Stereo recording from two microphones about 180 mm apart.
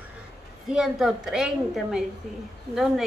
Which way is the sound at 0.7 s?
Centre (ahead or behind).